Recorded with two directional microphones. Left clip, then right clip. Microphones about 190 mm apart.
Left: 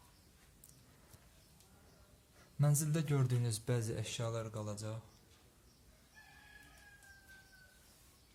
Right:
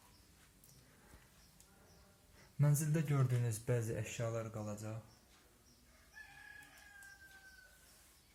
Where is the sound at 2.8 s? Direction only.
20° left (ahead or behind).